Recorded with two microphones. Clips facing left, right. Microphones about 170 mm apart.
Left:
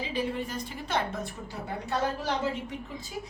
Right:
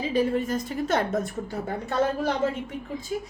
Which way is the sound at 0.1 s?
45° right (ahead or behind).